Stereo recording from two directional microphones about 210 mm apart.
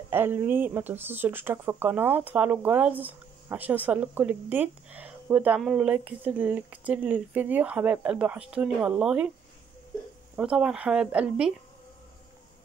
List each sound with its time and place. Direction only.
0.1 s speech: 10° right (ahead or behind)
10.3 s speech: 5° right (ahead or behind)